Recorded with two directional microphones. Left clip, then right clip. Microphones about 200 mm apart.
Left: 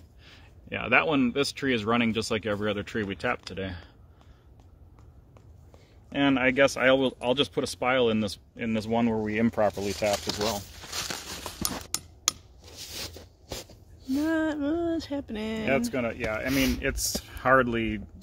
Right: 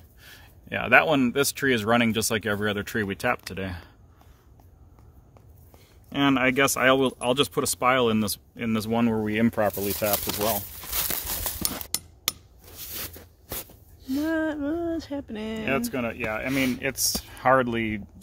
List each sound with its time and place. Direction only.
0.2 s speech: 60° right (ahead or behind)
6.0 s speech: 55° right (ahead or behind); by 10.5 s 40° right (ahead or behind)
10.5 s crumpling: 30° right (ahead or behind)
12.6 s a sound: 25° right (ahead or behind)
14.2 s a sound: centre (ahead or behind)
15.6 s speech: 30° right (ahead or behind)